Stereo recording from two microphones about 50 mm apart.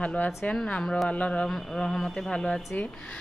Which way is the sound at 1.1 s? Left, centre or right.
Left.